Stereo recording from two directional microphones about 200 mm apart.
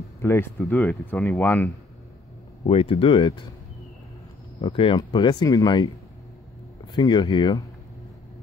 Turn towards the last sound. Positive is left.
turn(degrees=20)  # may be behind; listen again after turning